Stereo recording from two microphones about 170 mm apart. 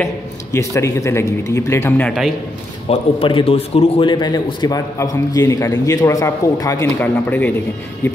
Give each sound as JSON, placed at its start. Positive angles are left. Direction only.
{"t": 0.0, "sound": "a man's voice", "side_deg": 15}
{"t": 2.9, "sound": "a man's voice", "side_deg": 30}